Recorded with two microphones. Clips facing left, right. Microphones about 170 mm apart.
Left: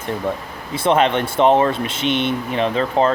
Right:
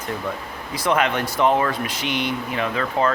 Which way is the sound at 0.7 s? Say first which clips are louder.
Left 5 dB; 25° left (ahead or behind).